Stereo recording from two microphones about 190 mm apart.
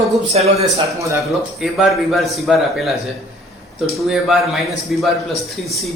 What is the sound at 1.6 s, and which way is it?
A man's voice, centre (ahead or behind).